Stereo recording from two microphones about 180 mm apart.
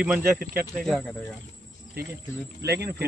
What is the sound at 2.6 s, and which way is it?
Speech, 65° right (ahead or behind).